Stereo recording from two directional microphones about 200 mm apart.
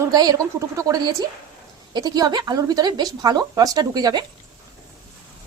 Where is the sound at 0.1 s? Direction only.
20° right (ahead or behind).